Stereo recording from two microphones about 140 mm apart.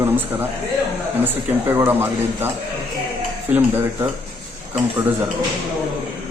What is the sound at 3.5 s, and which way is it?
Speech, 15° right (ahead or behind).